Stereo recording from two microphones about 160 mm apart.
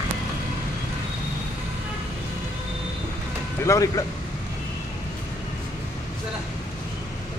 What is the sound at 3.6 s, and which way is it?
Speech, 20° left (ahead or behind).